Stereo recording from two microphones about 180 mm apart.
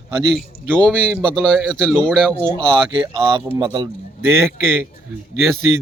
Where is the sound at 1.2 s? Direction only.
5° left (ahead or behind).